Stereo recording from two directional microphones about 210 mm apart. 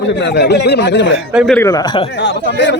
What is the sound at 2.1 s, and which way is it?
Speech, 60° left (ahead or behind).